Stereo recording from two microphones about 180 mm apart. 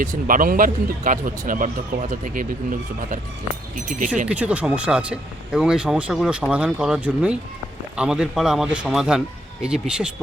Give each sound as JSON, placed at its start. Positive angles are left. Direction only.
{"t": 0.0, "sound": "speech", "side_deg": -50}
{"t": 4.3, "sound": "speech", "side_deg": -5}